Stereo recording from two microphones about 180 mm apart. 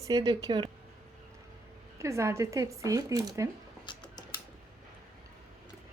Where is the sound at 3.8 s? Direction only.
25° left (ahead or behind).